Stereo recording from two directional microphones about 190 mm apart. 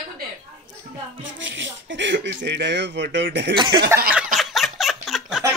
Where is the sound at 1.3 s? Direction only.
70° right (ahead or behind).